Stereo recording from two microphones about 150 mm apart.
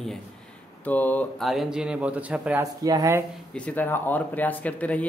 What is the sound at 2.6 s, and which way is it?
Speech, 25° right (ahead or behind).